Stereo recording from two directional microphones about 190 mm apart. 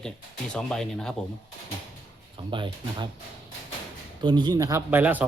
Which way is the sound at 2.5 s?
25° right (ahead or behind).